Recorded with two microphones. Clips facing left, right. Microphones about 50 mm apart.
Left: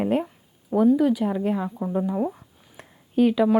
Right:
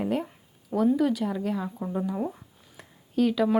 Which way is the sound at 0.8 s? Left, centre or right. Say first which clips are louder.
Left 4 dB; centre.